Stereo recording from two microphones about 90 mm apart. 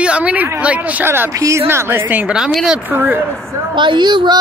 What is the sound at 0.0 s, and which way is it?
A woman's voice, 15° right (ahead or behind).